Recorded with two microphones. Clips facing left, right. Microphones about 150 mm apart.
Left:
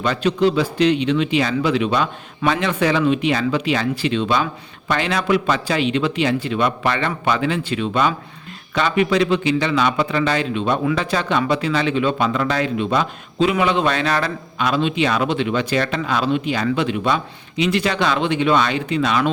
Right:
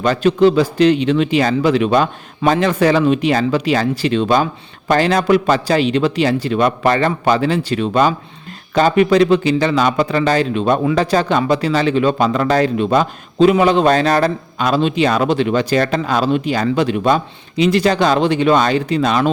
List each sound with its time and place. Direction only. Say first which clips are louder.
0.0 s a man's voice: right 5 dB; 45° right (ahead or behind)